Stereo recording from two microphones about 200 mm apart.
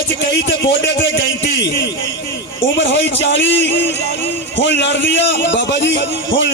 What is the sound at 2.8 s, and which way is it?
A man's voice, 65° left (ahead or behind).